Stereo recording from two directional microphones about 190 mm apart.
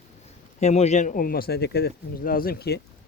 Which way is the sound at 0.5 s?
35° left (ahead or behind).